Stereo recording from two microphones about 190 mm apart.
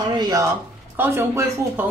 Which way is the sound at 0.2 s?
20° right (ahead or behind).